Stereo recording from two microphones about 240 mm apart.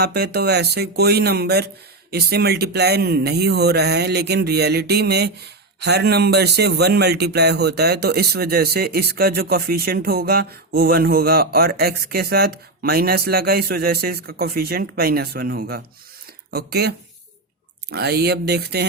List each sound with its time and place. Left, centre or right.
0.0 s speech: right
17.9 s speech: right